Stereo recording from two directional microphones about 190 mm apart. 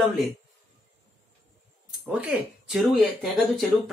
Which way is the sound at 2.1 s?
5° right (ahead or behind).